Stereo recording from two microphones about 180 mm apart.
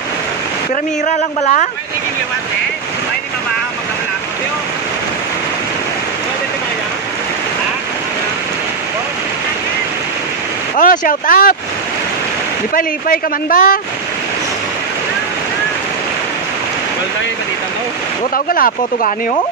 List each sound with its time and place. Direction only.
1.0 s speech: 45° left (ahead or behind)
10.8 s speech: 50° left (ahead or behind)
12.7 s speech: 50° left (ahead or behind)
18.3 s speech: 50° left (ahead or behind)